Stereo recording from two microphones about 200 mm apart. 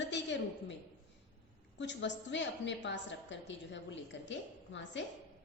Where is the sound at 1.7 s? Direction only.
65° left (ahead or behind).